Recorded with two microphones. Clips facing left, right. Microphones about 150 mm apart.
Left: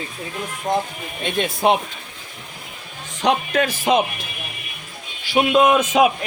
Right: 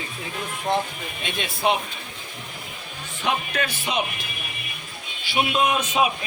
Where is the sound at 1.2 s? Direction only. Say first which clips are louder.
Left 6 dB; 45° left (ahead or behind).